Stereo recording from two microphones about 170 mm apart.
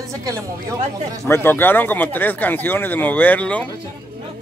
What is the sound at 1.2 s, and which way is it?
Speech, 15° left (ahead or behind).